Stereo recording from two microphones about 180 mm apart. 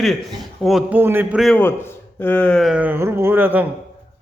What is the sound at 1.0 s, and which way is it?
Speech, 10° right (ahead or behind).